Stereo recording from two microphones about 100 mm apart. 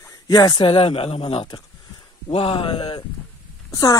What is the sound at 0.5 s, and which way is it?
Speech, 70° left (ahead or behind).